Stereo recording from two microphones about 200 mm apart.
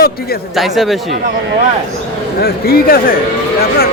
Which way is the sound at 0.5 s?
Centre (ahead or behind).